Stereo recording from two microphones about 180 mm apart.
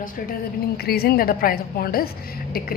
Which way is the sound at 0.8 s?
60° left (ahead or behind).